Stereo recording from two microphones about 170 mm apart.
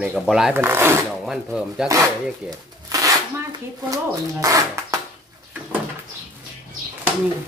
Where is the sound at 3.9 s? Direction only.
20° right (ahead or behind).